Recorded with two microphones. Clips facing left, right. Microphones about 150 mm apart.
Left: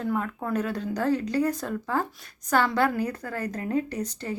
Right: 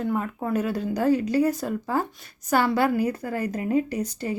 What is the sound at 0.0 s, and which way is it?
A woman's voice, 10° right (ahead or behind).